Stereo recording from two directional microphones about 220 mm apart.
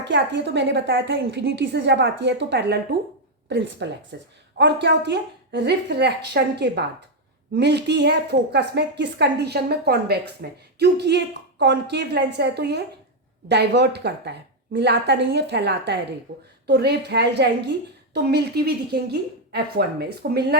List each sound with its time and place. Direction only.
0.0 s a woman's voice: 55° right (ahead or behind)
16.3 s a woman's voice: 60° right (ahead or behind)
16.6 s a woman's voice: 50° right (ahead or behind)